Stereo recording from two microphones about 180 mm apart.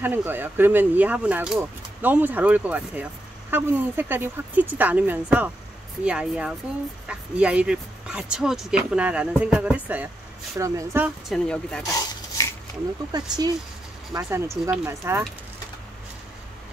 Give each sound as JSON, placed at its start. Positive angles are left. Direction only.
{"t": 0.0, "sound": "speech", "side_deg": -10}
{"t": 11.2, "sound": "speech", "side_deg": 5}
{"t": 11.8, "sound": "a sound", "side_deg": 20}
{"t": 13.1, "sound": "speech", "side_deg": -20}